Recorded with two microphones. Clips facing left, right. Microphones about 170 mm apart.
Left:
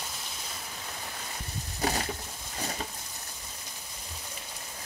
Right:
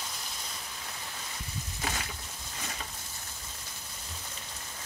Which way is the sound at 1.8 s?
35° left (ahead or behind).